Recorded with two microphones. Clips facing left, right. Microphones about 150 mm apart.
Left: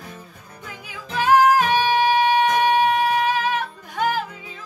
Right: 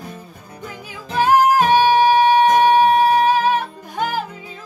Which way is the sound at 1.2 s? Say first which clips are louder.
Right 2 dB; 40° right (ahead or behind).